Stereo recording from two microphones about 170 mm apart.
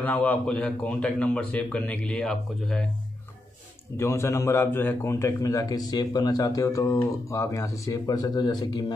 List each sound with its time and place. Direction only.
0.0 s a man's voice: 10° left (ahead or behind)
3.9 s a man's voice: 15° left (ahead or behind)